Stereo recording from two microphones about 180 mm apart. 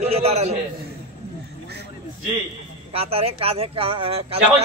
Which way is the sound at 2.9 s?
35° right (ahead or behind).